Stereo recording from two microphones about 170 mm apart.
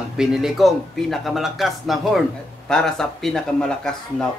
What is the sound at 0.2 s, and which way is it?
Speech, centre (ahead or behind).